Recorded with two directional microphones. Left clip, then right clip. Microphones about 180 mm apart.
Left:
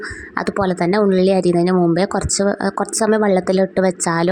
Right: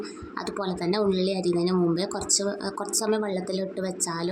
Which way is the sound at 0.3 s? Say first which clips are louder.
Left 12 dB; 45° left (ahead or behind).